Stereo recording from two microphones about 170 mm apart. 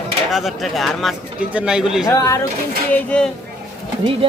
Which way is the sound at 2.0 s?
20° left (ahead or behind).